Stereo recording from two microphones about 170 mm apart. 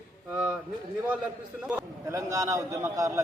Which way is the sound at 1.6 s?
10° right (ahead or behind).